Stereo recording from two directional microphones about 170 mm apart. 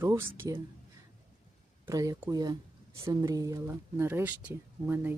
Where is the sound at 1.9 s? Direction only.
20° right (ahead or behind).